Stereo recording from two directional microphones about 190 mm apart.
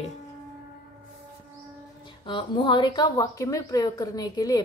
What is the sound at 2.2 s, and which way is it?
Speech, 25° left (ahead or behind).